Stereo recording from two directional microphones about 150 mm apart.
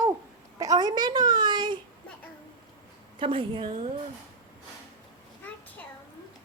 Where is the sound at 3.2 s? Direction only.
35° right (ahead or behind).